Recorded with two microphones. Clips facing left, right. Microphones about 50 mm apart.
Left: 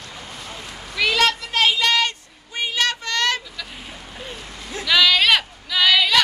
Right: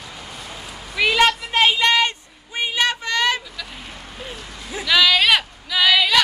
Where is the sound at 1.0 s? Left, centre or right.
Centre.